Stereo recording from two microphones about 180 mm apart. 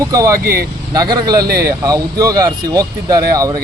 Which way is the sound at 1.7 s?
20° right (ahead or behind).